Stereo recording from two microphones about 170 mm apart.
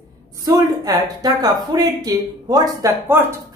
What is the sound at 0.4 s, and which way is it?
A woman's voice, 25° right (ahead or behind).